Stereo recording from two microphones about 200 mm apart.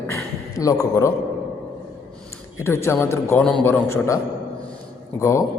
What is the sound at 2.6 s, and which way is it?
A man's voice, 10° left (ahead or behind).